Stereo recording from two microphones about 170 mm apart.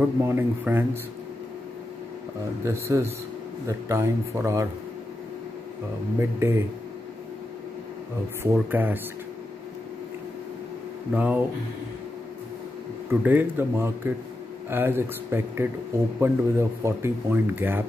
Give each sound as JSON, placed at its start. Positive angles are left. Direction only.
{"t": 0.0, "sound": "speech", "side_deg": -10}
{"t": 2.6, "sound": "speech", "side_deg": -15}
{"t": 6.1, "sound": "speech", "side_deg": -15}
{"t": 8.5, "sound": "speech", "side_deg": -10}
{"t": 11.1, "sound": "speech", "side_deg": -10}
{"t": 13.2, "sound": "speech", "side_deg": -10}